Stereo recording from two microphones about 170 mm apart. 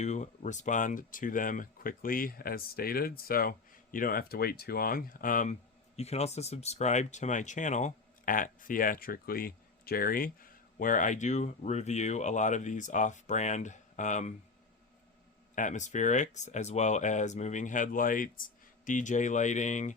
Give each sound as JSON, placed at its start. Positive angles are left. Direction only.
{"t": 0.0, "sound": "speech", "side_deg": 45}
{"t": 6.0, "sound": "speech", "side_deg": 40}
{"t": 15.5, "sound": "speech", "side_deg": 45}